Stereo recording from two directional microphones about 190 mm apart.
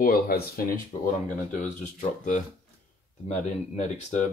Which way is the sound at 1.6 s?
40° left (ahead or behind).